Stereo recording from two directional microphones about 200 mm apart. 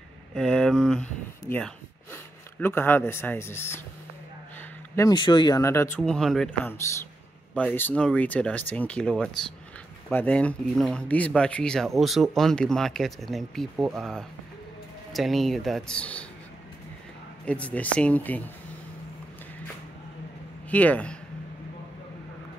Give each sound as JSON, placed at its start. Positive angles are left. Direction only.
{"t": 0.3, "sound": "speech", "side_deg": 5}
{"t": 5.9, "sound": "speech", "side_deg": 5}
{"t": 17.5, "sound": "speech", "side_deg": 5}
{"t": 20.7, "sound": "speech", "side_deg": 5}